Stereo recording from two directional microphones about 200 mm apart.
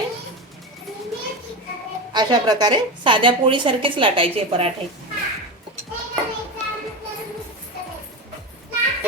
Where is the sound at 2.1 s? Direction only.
20° right (ahead or behind).